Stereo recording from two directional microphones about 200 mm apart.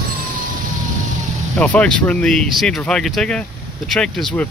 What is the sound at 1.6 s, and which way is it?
Speech, 5° left (ahead or behind).